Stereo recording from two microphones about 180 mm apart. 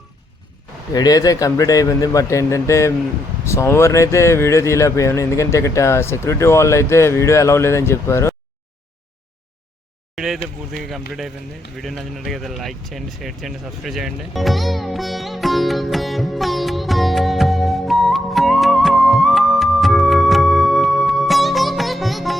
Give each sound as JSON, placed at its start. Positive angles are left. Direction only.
{"t": 0.9, "sound": "speech", "side_deg": 20}
{"t": 10.2, "sound": "speech", "side_deg": 0}
{"t": 11.8, "sound": "a sound", "side_deg": 0}